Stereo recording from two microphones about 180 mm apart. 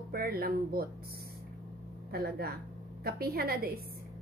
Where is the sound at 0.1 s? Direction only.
55° right (ahead or behind).